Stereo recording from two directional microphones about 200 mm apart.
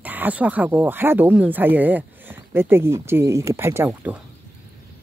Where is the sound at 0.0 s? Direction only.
10° right (ahead or behind).